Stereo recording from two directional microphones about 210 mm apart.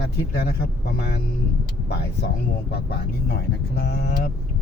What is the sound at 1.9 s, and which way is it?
Speech, 50° left (ahead or behind).